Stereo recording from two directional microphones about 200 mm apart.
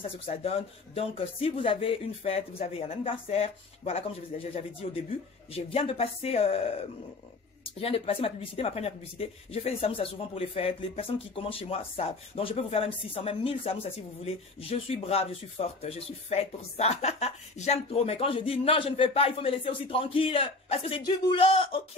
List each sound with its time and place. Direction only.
0.0 s speech: 30° left (ahead or behind)
7.6 s speech: 30° left (ahead or behind)